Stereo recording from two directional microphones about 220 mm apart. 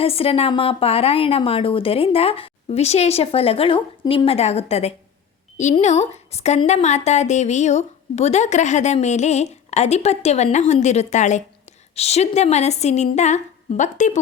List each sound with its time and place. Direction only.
0.0 s a woman's voice: 25° left (ahead or behind)